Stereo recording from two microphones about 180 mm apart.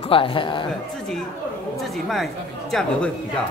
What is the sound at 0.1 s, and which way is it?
Speech, 30° left (ahead or behind).